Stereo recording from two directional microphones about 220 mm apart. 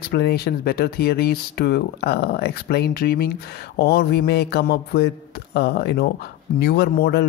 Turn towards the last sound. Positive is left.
turn(degrees=45)  # may be behind; listen again after turning